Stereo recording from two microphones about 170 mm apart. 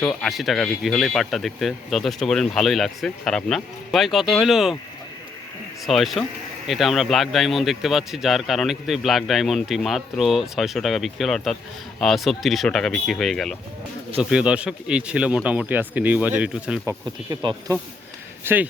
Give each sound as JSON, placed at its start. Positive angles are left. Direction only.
{"t": 0.0, "sound": "speech", "side_deg": 5}
{"t": 5.8, "sound": "speech", "side_deg": 0}
{"t": 17.2, "sound": "speech", "side_deg": -20}
{"t": 18.4, "sound": "speech", "side_deg": -10}